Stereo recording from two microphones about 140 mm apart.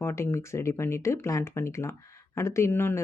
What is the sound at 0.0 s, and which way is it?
Speech, 15° left (ahead or behind).